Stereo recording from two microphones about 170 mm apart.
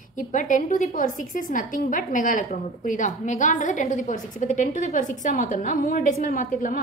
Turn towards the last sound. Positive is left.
turn(degrees=50)  # may be behind; listen again after turning